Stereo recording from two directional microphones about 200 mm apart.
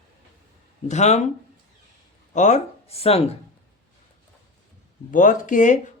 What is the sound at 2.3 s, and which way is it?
Speech, 35° left (ahead or behind).